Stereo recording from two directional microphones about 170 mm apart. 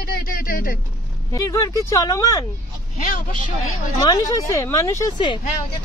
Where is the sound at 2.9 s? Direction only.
50° left (ahead or behind).